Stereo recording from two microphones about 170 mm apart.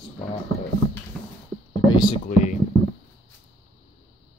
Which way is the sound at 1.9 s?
25° left (ahead or behind).